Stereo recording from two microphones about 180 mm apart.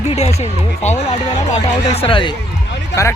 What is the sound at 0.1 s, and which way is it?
Speech, 35° left (ahead or behind).